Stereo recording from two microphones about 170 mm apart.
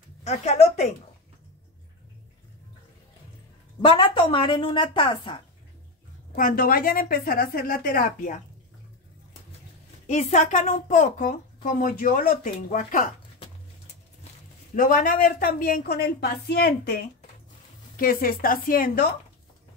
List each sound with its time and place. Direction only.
0.2 s speech: 40° left (ahead or behind)
3.8 s a woman's voice: 30° left (ahead or behind)
6.3 s a woman's voice: 55° left (ahead or behind)
10.0 s speech: 45° left (ahead or behind)
14.8 s a woman's voice: 55° left (ahead or behind)